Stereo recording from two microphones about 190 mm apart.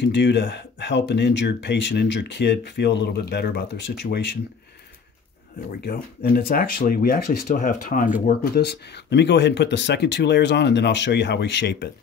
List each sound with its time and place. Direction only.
0.0 s speech: 65° left (ahead or behind)
5.8 s speech: 50° left (ahead or behind)
8.3 s speech: 60° left (ahead or behind)